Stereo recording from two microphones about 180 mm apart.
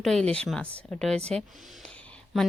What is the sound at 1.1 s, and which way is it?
Speech, 35° right (ahead or behind).